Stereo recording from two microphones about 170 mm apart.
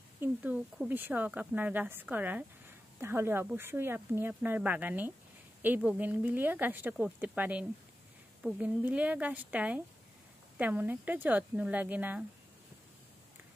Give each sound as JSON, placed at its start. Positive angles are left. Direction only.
{"t": 0.2, "sound": "speech", "side_deg": -10}